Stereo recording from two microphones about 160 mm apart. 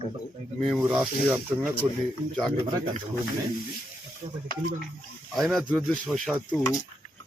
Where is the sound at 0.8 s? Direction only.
10° right (ahead or behind).